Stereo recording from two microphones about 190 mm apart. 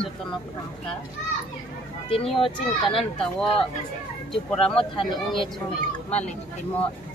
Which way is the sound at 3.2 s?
Centre (ahead or behind).